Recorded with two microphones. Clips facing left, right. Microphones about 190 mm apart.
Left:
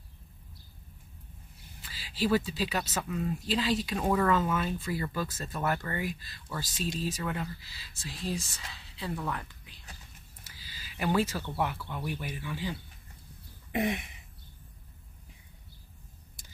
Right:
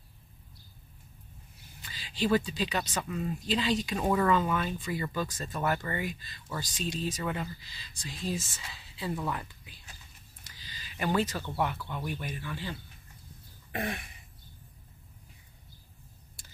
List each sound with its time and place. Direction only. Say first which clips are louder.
1.8 s speech: even; 5° left (ahead or behind)
10.4 s a sound: right 1 dB; 10° left (ahead or behind)
11.5 s speech: right 2 dB; 10° left (ahead or behind)
13.7 s throat clearing: left 5 dB; 20° left (ahead or behind)